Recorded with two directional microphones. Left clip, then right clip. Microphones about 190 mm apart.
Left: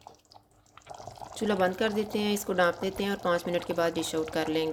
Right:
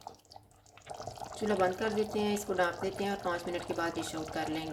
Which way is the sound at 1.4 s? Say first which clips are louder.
Left 3 dB; 45° left (ahead or behind).